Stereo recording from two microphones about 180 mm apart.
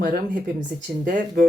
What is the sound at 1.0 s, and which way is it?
Speech, 55° right (ahead or behind).